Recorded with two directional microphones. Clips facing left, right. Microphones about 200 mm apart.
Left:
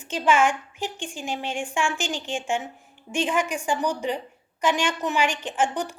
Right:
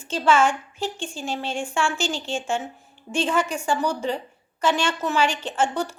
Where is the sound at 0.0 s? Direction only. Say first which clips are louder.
Right 1 dB; 15° left (ahead or behind).